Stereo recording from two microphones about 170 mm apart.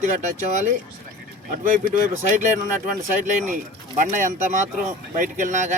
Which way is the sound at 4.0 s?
50° right (ahead or behind).